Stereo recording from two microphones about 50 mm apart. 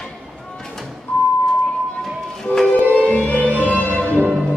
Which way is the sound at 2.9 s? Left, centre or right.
Left.